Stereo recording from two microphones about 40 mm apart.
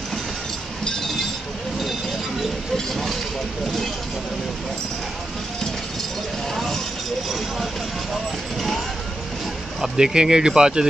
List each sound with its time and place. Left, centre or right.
2.9 s speech: centre
6.5 s a sound: centre
9.9 s speech: centre